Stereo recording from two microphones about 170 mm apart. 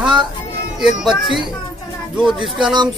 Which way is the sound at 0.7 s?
5° right (ahead or behind).